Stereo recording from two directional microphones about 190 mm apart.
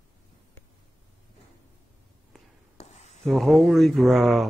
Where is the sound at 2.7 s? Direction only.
35° left (ahead or behind).